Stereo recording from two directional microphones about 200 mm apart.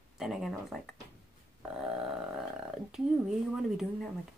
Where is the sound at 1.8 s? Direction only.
Centre (ahead or behind).